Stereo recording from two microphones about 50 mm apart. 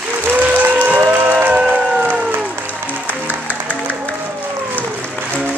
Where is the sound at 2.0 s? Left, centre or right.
Right.